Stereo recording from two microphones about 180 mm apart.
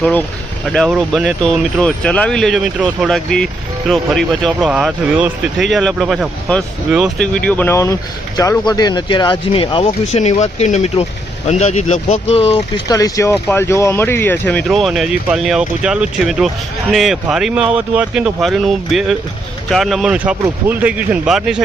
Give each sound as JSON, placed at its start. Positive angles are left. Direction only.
{"t": 0.0, "sound": "speech", "side_deg": 5}
{"t": 7.4, "sound": "speech", "side_deg": 10}
{"t": 12.9, "sound": "speech", "side_deg": 20}
{"t": 14.7, "sound": "speech", "side_deg": 0}